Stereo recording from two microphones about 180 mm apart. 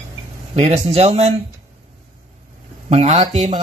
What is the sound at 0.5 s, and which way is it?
Speech, 35° right (ahead or behind).